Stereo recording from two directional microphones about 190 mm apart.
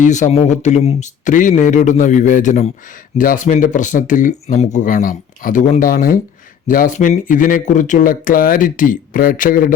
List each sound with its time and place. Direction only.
0.0 s speech: 40° left (ahead or behind)